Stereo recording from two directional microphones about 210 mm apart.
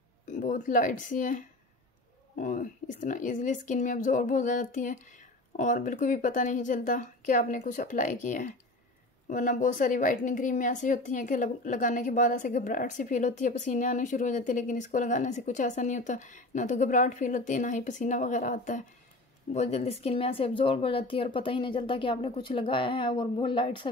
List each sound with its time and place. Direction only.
0.3 s a woman's voice: 40° left (ahead or behind); by 23.9 s 25° left (ahead or behind)